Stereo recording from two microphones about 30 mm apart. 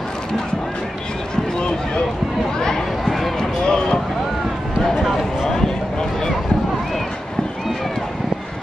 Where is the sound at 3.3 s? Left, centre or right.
Left.